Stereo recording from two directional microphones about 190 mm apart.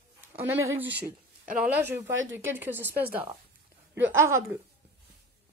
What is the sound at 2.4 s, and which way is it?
Speech, 10° right (ahead or behind).